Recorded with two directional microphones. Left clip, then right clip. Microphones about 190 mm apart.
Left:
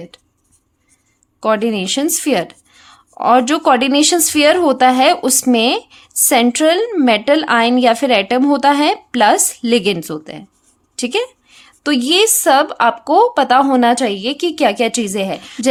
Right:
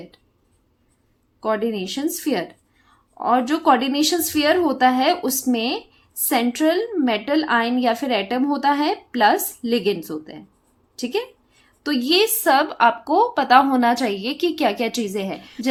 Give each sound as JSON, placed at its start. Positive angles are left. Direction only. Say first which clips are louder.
{"t": 1.4, "sound": "speech", "louder": "left 7 dB", "side_deg": 35}